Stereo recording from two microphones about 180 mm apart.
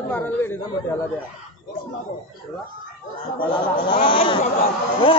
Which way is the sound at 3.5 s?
25° left (ahead or behind).